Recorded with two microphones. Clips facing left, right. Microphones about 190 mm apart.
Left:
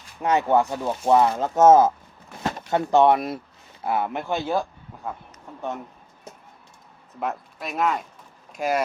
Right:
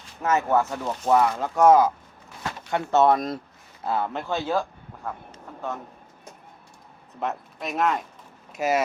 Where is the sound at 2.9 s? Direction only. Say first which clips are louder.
Left 1 dB; 15° left (ahead or behind).